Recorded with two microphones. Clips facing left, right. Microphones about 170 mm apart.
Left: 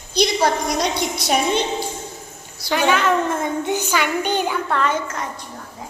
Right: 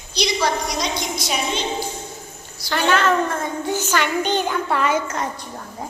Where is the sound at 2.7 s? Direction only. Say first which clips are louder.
Left 1 dB; 10° left (ahead or behind).